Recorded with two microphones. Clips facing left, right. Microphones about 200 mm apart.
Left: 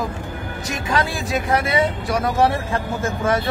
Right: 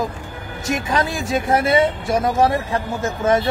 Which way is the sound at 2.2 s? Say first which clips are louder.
Right 1 dB; 20° right (ahead or behind).